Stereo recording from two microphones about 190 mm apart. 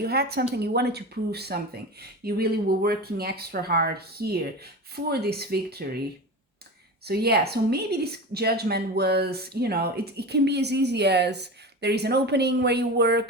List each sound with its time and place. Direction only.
0.0 s a woman's voice: 55° right (ahead or behind)
7.0 s a woman's voice: 55° right (ahead or behind)